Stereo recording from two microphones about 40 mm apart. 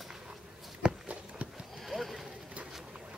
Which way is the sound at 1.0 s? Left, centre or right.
Right.